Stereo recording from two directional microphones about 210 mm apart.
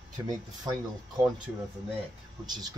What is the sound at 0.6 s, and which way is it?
Speech, 20° right (ahead or behind).